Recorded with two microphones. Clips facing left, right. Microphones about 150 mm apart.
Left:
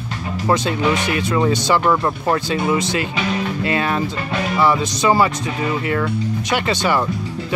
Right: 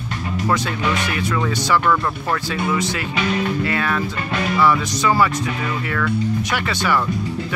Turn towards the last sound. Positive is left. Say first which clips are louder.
# left 3 dB
turn(degrees=25)  # may be behind; listen again after turning